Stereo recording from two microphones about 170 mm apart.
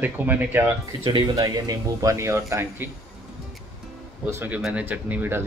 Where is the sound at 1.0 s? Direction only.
25° right (ahead or behind).